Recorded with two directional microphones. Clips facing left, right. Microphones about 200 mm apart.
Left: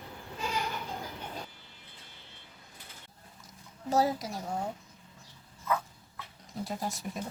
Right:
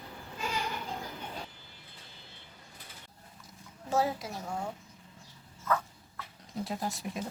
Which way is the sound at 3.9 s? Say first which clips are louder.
Left 2 dB; 40° left (ahead or behind).